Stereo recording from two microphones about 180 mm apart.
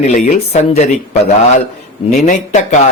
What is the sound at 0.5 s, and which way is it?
Speech, 35° left (ahead or behind).